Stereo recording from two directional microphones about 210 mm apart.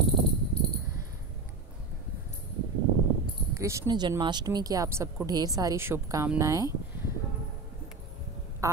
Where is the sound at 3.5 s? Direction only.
15° right (ahead or behind).